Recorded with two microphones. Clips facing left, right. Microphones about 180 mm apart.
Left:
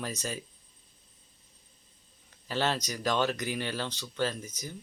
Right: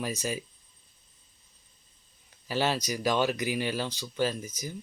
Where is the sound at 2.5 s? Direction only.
10° right (ahead or behind).